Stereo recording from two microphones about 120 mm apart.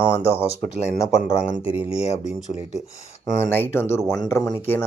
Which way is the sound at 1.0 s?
5° right (ahead or behind).